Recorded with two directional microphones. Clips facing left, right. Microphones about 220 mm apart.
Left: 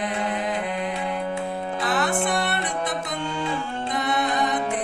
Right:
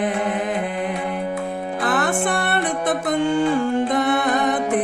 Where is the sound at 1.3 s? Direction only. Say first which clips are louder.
Right 2 dB; 15° right (ahead or behind).